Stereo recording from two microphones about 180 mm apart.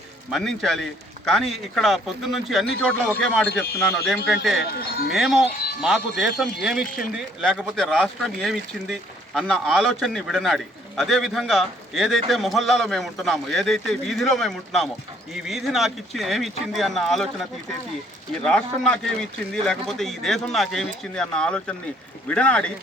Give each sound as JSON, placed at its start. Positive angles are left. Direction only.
{"t": 0.3, "sound": "speech", "side_deg": 0}
{"t": 2.8, "sound": "speech", "side_deg": 10}
{"t": 4.6, "sound": "speech", "side_deg": 60}
{"t": 5.1, "sound": "speech", "side_deg": -5}
{"t": 18.4, "sound": "speech", "side_deg": 5}